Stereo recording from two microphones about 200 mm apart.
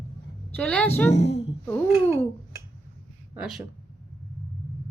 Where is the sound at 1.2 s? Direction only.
60° left (ahead or behind).